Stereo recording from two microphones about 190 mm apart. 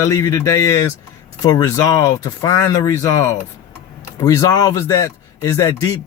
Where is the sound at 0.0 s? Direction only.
15° left (ahead or behind).